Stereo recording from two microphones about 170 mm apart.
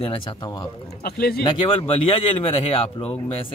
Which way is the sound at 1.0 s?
65° left (ahead or behind).